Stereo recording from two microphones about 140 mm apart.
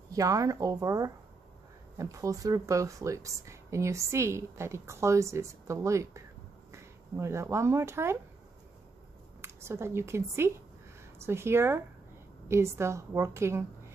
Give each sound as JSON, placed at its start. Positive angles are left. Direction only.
{"t": 0.1, "sound": "speech", "side_deg": -25}
{"t": 9.4, "sound": "a woman's voice", "side_deg": -20}